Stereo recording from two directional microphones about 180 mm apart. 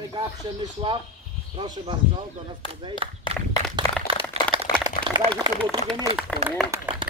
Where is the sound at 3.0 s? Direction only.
30° right (ahead or behind).